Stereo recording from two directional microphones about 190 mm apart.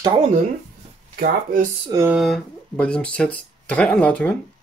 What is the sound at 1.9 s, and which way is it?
Speech, 15° right (ahead or behind).